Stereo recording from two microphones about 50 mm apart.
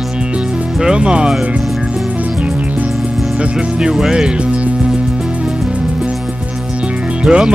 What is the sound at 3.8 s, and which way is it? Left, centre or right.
Music, centre.